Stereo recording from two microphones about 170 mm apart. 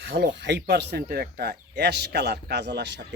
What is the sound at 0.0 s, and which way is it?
Speech, 90° right.